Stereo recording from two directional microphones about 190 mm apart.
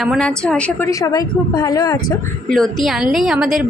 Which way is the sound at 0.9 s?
20° left (ahead or behind).